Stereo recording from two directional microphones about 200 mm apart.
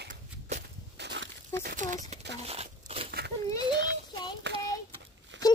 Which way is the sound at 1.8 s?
40° right (ahead or behind).